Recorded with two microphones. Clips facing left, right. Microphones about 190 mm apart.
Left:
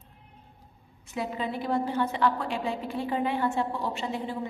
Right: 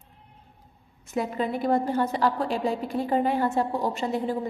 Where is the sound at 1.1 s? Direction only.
50° right (ahead or behind).